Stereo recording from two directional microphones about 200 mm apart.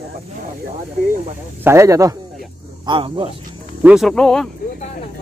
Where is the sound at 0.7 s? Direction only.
35° right (ahead or behind).